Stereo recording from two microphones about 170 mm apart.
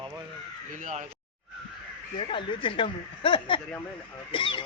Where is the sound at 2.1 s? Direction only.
30° left (ahead or behind).